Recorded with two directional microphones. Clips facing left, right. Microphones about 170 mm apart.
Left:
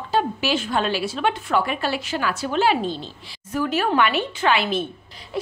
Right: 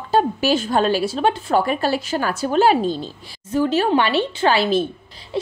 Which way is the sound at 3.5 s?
30° right (ahead or behind).